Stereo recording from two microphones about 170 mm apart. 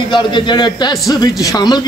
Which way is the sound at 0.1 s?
25° left (ahead or behind).